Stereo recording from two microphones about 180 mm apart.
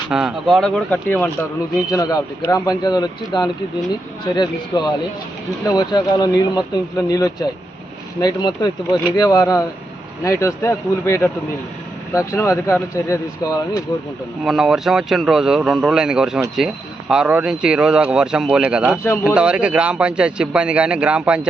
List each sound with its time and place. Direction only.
0.1 s speech: 5° right (ahead or behind)
1.9 s speech: 20° left (ahead or behind)
4.7 s speech: 20° left (ahead or behind)
14.4 s a man's voice: centre (ahead or behind)